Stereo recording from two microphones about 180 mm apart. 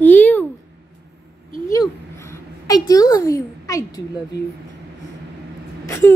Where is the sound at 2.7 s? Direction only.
20° left (ahead or behind).